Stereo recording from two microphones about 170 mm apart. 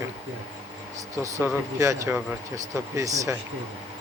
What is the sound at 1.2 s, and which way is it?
Speech, 15° right (ahead or behind).